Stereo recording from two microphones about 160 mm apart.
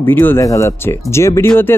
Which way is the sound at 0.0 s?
10° left (ahead or behind).